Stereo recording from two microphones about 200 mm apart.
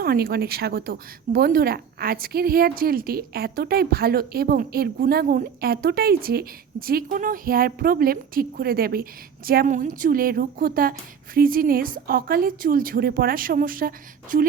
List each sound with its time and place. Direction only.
0.0 s a woman's voice: 50° right (ahead or behind)